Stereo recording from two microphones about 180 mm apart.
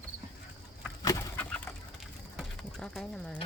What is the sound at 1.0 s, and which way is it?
Bird, 20° left (ahead or behind).